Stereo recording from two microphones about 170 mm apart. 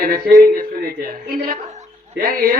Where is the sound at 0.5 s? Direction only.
60° right (ahead or behind).